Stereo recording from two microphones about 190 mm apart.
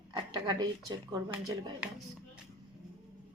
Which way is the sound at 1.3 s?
20° right (ahead or behind).